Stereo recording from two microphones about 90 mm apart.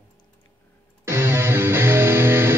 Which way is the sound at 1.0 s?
30° right (ahead or behind).